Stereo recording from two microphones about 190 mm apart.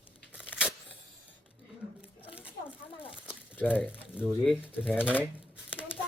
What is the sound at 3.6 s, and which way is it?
Speech, 10° left (ahead or behind).